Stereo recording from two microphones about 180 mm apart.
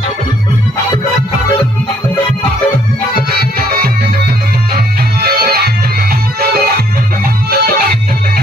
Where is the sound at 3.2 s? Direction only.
55° right (ahead or behind).